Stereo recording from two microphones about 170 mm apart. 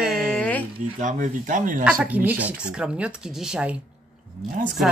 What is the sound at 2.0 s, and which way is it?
Speech, 10° right (ahead or behind).